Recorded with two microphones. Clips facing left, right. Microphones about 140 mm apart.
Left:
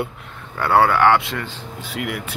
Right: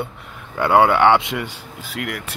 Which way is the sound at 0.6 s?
15° right (ahead or behind).